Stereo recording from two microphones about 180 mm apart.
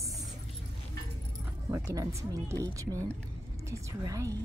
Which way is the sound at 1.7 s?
15° right (ahead or behind).